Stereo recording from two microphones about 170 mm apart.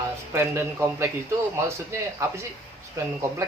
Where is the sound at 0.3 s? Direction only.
15° right (ahead or behind).